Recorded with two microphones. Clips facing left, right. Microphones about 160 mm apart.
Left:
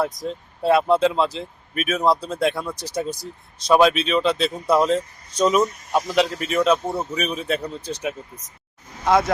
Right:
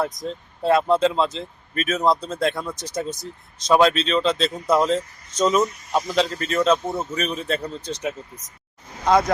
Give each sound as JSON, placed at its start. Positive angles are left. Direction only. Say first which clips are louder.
{"t": 0.0, "sound": "speech", "louder": "left 1 dB", "side_deg": 5}
{"t": 4.9, "sound": "speech", "louder": "left 1 dB", "side_deg": -25}
{"t": 5.5, "sound": "speech", "louder": "left 1 dB", "side_deg": 5}
{"t": 9.0, "sound": "speech", "louder": "even", "side_deg": 0}